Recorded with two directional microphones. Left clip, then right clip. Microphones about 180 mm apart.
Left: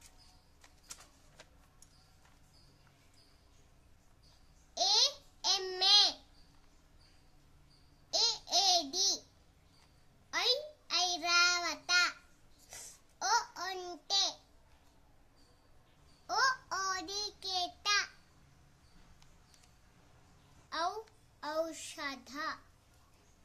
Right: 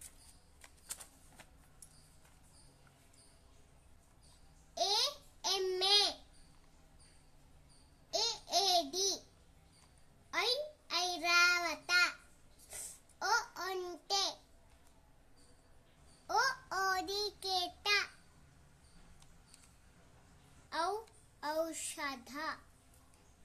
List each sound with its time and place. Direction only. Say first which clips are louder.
4.7 s babbling: left 4 dB; 20° left (ahead or behind)
8.1 s babbling: left 3 dB; 20° left (ahead or behind)
10.3 s child singing: left 2 dB; 20° left (ahead or behind)
12.6 s babbling: even; 25° left (ahead or behind)
16.3 s child singing: left 2 dB; 15° left (ahead or behind)
21.4 s a sound: even; 15° left (ahead or behind)